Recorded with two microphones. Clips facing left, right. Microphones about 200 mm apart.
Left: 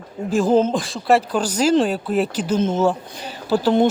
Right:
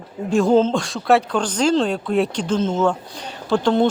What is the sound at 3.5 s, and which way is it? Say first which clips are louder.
Speech: even; 5° left (ahead or behind).